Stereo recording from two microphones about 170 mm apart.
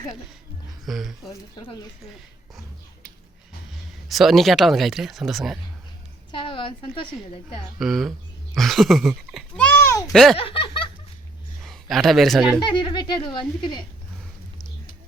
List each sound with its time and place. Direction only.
0.9 s speech: centre (ahead or behind)
1.3 s speech: 25° left (ahead or behind)
4.1 s speech: centre (ahead or behind)
6.3 s speech: 30° left (ahead or behind)
7.8 s speech: centre (ahead or behind)
9.7 s a sound: 15° left (ahead or behind)
10.1 s speech: centre (ahead or behind)
10.3 s a sound: 30° left (ahead or behind)
11.6 s a man's voice: centre (ahead or behind)
12.5 s speech: 25° left (ahead or behind)